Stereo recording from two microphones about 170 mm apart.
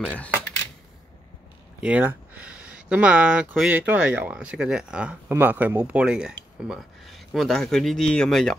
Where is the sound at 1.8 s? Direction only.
10° right (ahead or behind).